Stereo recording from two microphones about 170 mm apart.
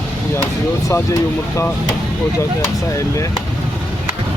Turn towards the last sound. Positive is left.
turn(degrees=15)  # may be behind; listen again after turning